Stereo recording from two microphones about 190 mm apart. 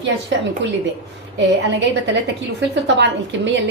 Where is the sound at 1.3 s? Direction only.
70° right (ahead or behind).